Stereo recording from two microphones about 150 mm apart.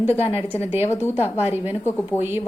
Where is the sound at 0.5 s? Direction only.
15° right (ahead or behind).